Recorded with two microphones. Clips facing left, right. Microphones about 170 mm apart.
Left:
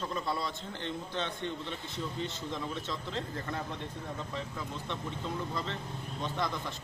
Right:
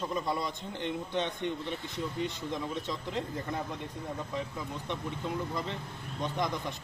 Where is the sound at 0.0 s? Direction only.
15° right (ahead or behind).